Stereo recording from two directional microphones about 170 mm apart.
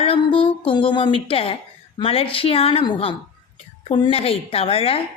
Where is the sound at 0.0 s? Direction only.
30° left (ahead or behind).